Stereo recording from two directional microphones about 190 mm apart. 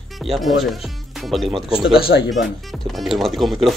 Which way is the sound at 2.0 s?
55° left (ahead or behind).